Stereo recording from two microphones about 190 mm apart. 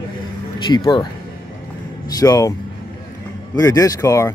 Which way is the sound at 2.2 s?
20° left (ahead or behind).